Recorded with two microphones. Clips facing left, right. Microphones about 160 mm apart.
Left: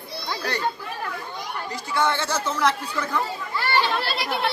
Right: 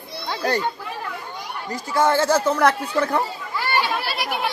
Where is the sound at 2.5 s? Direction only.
55° right (ahead or behind).